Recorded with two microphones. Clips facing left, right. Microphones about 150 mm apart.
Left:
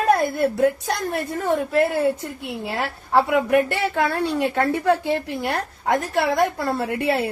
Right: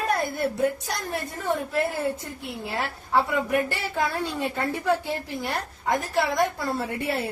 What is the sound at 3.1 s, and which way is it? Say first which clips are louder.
A woman's voice: left 6 dB; 70° left (ahead or behind).